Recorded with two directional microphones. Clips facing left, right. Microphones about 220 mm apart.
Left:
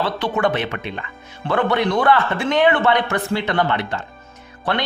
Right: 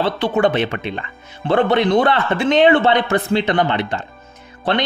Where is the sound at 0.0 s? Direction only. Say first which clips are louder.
Right 4 dB; 25° right (ahead or behind).